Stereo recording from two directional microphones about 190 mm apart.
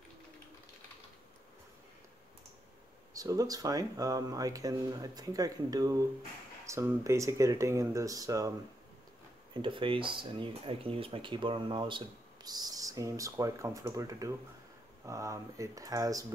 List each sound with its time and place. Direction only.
3.2 s speech: 20° right (ahead or behind)